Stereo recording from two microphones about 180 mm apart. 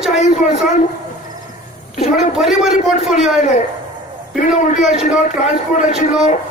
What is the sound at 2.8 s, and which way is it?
Speech, 40° left (ahead or behind).